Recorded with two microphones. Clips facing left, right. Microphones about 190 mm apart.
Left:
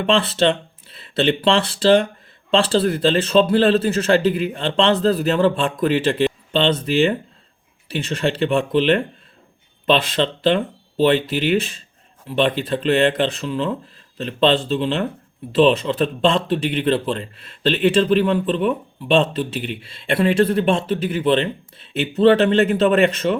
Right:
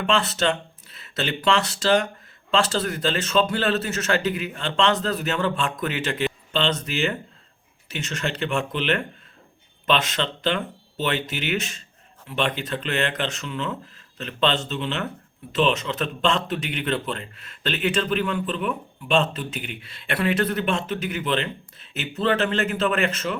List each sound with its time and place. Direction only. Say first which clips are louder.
0.0 s a man's voice: left 5 dB; 30° left (ahead or behind)
12.3 s a man's voice: left 7 dB; 30° left (ahead or behind)